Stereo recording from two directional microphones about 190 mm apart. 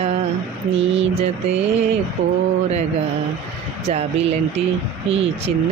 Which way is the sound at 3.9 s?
35° right (ahead or behind).